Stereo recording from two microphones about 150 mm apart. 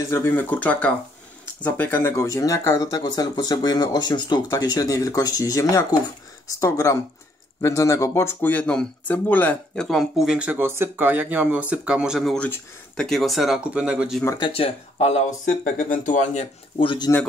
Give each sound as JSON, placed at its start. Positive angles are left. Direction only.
{"t": 0.1, "sound": "speech", "side_deg": 15}
{"t": 12.4, "sound": "speech", "side_deg": 5}
{"t": 14.4, "sound": "speech", "side_deg": 40}
{"t": 16.8, "sound": "speech", "side_deg": 35}